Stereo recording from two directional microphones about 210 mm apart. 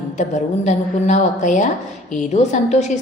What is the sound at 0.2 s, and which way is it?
A woman's voice, 35° left (ahead or behind).